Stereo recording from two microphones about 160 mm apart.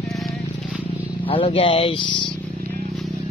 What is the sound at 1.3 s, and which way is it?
Speech, 35° left (ahead or behind).